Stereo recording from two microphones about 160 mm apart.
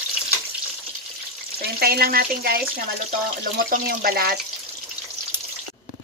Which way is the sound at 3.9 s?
70° right (ahead or behind).